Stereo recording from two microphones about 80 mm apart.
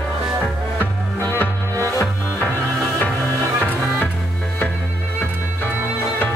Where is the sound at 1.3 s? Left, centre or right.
Left.